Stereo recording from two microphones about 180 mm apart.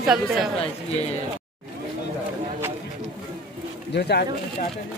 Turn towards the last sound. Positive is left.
turn(degrees=65)  # may be behind; listen again after turning